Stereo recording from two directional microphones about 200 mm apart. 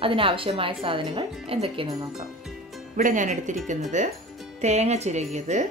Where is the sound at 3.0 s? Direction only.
40° right (ahead or behind).